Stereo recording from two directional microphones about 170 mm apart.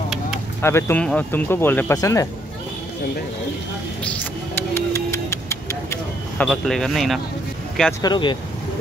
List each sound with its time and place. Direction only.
0.6 s speech: 15° left (ahead or behind)
4.0 s music: 10° left (ahead or behind)
6.4 s speech: 5° left (ahead or behind)
8.0 s speech: 25° left (ahead or behind)